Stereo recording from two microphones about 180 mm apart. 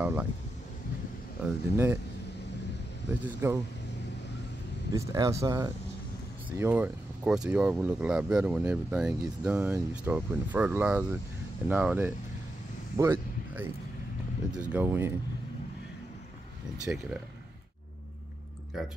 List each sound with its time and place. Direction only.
0.0 s speech: 10° right (ahead or behind)
1.4 s speech: 10° right (ahead or behind)
3.1 s speech: 10° right (ahead or behind)
4.9 s speech: 20° right (ahead or behind)
12.9 s a sound: 15° right (ahead or behind)
14.5 s speech: 10° right (ahead or behind)
18.8 s speech: centre (ahead or behind)